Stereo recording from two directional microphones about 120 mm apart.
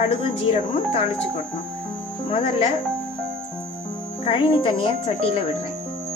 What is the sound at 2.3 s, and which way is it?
Speech, 45° left (ahead or behind).